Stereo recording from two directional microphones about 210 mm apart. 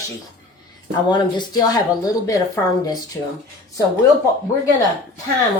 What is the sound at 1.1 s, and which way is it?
Speech, 20° left (ahead or behind).